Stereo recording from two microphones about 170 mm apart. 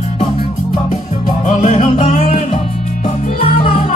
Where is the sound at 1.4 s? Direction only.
40° left (ahead or behind).